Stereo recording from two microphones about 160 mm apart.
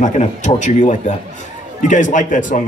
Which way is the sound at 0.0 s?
50° left (ahead or behind).